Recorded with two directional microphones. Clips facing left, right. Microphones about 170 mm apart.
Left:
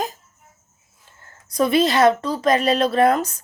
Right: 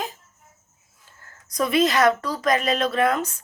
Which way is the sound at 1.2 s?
30° left (ahead or behind).